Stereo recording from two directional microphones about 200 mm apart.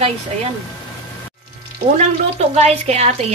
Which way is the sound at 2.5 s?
30° right (ahead or behind).